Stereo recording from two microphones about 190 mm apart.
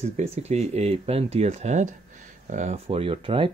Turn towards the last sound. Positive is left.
turn(degrees=-25)  # may be behind; listen again after turning